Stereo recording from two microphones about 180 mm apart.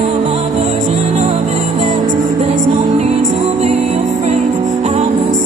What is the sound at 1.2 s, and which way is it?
Music, 40° right (ahead or behind).